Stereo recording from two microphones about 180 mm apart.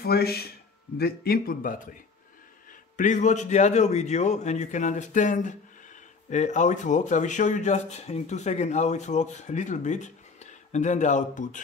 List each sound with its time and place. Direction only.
0.0 s speech: 60° left (ahead or behind)
3.0 s speech: 45° left (ahead or behind)